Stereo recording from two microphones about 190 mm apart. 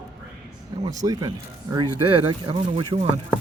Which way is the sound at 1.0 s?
20° right (ahead or behind).